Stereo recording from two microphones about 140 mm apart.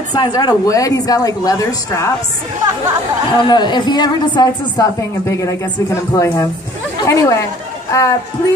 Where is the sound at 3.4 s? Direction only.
30° left (ahead or behind).